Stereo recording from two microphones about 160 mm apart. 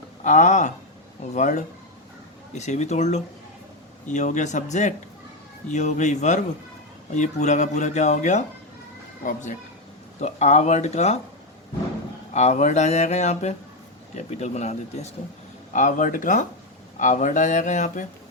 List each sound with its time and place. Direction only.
0.3 s speech: 50° left (ahead or behind)
12.3 s speech: 45° left (ahead or behind)